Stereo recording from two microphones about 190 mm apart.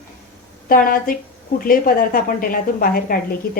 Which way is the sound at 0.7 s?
50° left (ahead or behind).